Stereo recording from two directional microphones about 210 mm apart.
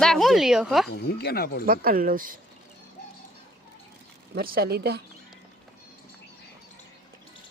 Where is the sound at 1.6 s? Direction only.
45° right (ahead or behind).